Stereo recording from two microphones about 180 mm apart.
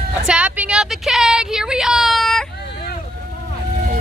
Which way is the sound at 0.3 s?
10° right (ahead or behind).